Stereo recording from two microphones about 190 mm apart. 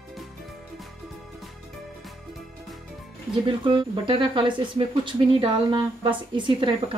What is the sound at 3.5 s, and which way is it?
Speech, 25° right (ahead or behind).